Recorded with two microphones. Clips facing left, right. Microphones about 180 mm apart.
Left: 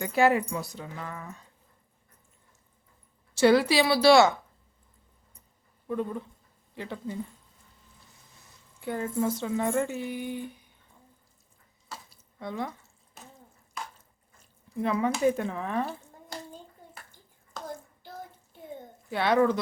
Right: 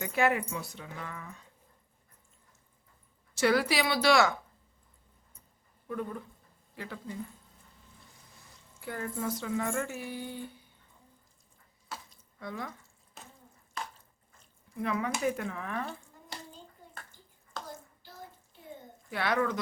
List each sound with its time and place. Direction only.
0.0 s speech: 35° left (ahead or behind)
3.3 s speech: 25° left (ahead or behind)
5.9 s speech: 25° left (ahead or behind)
8.8 s speech: 20° left (ahead or behind)
12.4 s speech: 25° left (ahead or behind)
14.8 s speech: 30° left (ahead or behind)
19.1 s speech: 25° left (ahead or behind)